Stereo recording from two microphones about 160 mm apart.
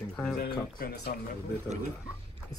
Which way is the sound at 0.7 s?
80° left.